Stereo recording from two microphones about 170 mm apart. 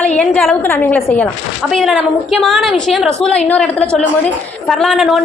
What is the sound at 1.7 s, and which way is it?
A woman's voice, centre (ahead or behind).